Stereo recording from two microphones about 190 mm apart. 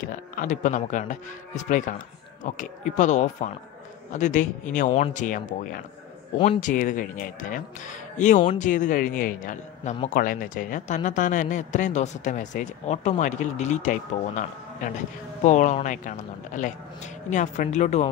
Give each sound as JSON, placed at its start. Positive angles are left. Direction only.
{"t": 0.0, "sound": "speech", "side_deg": 45}